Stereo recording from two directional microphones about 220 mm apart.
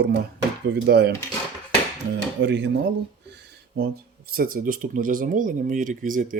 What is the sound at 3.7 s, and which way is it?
Speech, 45° right (ahead or behind).